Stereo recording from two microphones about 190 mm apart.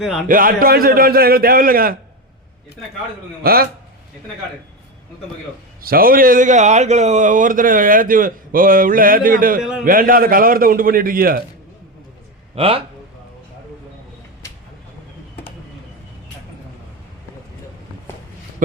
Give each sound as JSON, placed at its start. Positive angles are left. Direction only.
{"t": 0.0, "sound": "speech", "side_deg": 0}
{"t": 0.3, "sound": "speech", "side_deg": -45}
{"t": 3.4, "sound": "speech", "side_deg": -50}
{"t": 5.8, "sound": "speech", "side_deg": -50}
{"t": 12.5, "sound": "speech", "side_deg": -30}